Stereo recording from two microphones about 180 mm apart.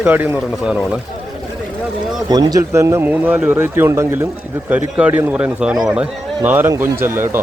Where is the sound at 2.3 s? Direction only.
20° right (ahead or behind).